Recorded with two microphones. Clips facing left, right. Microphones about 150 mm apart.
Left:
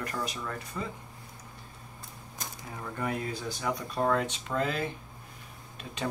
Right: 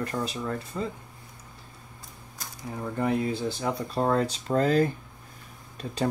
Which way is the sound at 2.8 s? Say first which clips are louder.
Right 7 dB; 30° right (ahead or behind).